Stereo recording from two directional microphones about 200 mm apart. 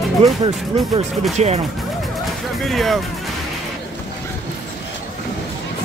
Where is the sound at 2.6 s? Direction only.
Centre (ahead or behind).